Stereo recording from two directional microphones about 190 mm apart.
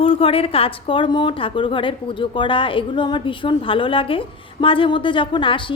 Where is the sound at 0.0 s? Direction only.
30° left (ahead or behind).